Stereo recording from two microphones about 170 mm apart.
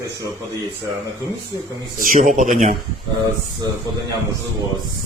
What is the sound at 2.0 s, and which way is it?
Speech, 50° right (ahead or behind).